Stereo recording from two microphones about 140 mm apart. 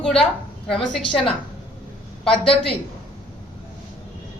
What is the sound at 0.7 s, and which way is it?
Speech, 5° left (ahead or behind).